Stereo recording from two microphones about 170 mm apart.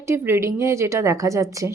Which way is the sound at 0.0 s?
15° right (ahead or behind).